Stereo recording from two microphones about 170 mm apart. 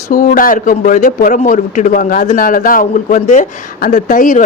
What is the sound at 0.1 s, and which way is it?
A man's voice, 55° left (ahead or behind).